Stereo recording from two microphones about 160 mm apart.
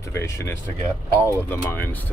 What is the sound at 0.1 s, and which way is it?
Speech, 15° left (ahead or behind).